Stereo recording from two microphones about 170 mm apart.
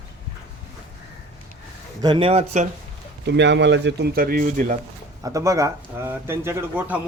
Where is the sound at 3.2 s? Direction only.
90° right; by 4.7 s 50° right (ahead or behind).